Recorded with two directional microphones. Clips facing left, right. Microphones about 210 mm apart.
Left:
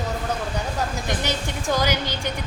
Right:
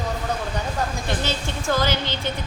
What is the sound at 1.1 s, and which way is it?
A woman's voice, 15° left (ahead or behind).